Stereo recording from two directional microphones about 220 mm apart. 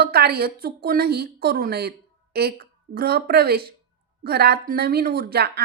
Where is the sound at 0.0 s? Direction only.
45° right (ahead or behind).